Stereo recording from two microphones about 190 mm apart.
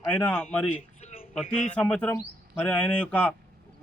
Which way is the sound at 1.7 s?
5° left (ahead or behind).